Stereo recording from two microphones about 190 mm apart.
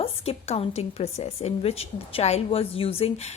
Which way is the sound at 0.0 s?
30° left (ahead or behind).